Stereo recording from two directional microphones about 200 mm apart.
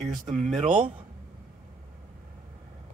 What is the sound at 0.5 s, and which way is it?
Speech, 30° right (ahead or behind).